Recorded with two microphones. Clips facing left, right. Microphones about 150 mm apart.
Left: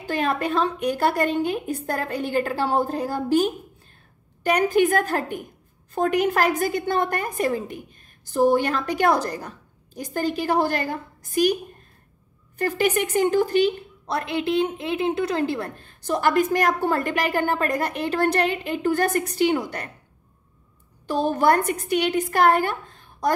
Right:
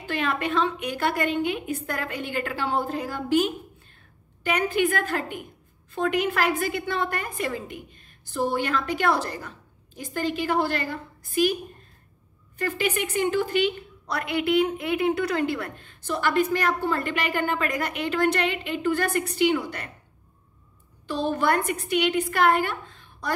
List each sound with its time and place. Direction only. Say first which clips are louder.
0.0 s a woman's voice: left 3 dB; 40° left (ahead or behind)
12.5 s a woman's voice: left 5 dB; 40° left (ahead or behind)
21.1 s a woman's voice: left 4 dB; 45° left (ahead or behind)